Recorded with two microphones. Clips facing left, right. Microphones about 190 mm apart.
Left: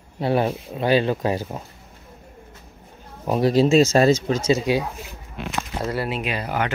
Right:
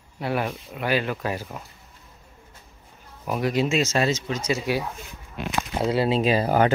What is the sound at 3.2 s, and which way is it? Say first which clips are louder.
Speech: left 6 dB; 30° left (ahead or behind).